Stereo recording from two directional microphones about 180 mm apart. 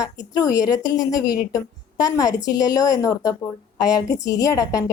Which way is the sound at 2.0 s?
20° left (ahead or behind).